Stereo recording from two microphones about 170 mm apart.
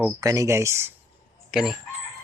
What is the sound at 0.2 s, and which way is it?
Speech, 20° right (ahead or behind).